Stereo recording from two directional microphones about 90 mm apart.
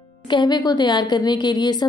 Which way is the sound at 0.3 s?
55° left (ahead or behind).